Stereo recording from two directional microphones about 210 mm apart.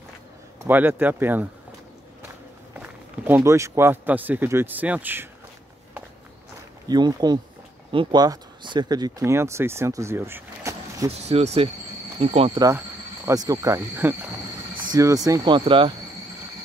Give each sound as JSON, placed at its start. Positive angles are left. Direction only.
{"t": 0.7, "sound": "speech", "side_deg": -10}
{"t": 2.8, "sound": "a man's voice", "side_deg": -10}
{"t": 6.9, "sound": "speech", "side_deg": -20}
{"t": 11.1, "sound": "speech", "side_deg": -30}
{"t": 12.6, "sound": "speech", "side_deg": -15}